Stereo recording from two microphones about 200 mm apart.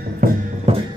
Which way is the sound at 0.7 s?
30° right (ahead or behind).